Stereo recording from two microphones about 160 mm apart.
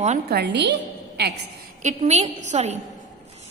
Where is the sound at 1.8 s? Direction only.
45° right (ahead or behind).